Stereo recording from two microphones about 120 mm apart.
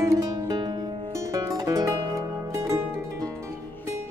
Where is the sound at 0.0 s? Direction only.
25° right (ahead or behind).